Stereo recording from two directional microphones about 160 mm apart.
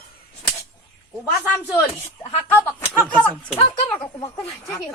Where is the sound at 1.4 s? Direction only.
10° left (ahead or behind).